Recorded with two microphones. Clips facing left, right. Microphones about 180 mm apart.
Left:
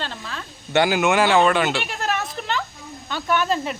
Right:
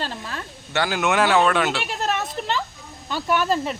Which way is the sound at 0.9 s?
Centre (ahead or behind).